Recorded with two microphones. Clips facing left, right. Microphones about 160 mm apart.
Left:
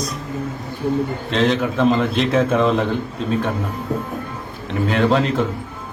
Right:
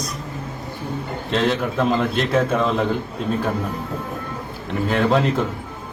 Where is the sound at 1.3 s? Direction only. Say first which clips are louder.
Left 2 dB; centre (ahead or behind).